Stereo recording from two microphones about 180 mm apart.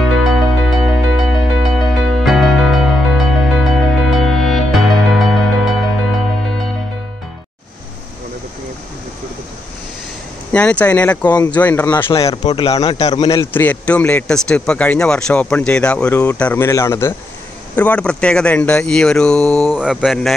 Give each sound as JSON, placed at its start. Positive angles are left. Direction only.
{"t": 0.1, "sound": "music", "side_deg": 0}
{"t": 10.5, "sound": "speech", "side_deg": 10}
{"t": 11.9, "sound": "speech", "side_deg": 20}